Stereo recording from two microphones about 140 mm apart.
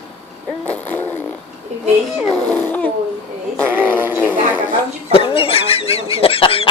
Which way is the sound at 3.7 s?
15° right (ahead or behind).